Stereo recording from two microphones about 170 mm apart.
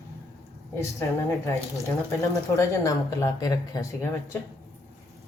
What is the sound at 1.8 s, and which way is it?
Speech, 20° left (ahead or behind).